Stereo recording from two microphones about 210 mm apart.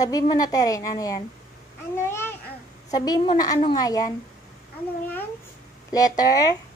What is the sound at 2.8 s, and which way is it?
A woman's voice, 20° left (ahead or behind).